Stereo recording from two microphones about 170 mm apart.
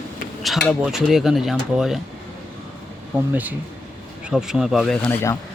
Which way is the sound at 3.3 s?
10° right (ahead or behind).